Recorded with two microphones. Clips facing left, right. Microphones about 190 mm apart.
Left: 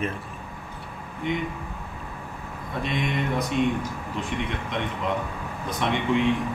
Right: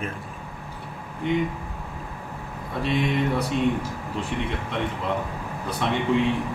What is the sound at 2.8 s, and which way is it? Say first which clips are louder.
Speech: right 4 dB; 35° right (ahead or behind).